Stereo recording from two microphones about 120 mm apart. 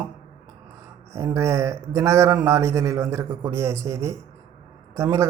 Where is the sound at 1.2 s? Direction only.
25° right (ahead or behind).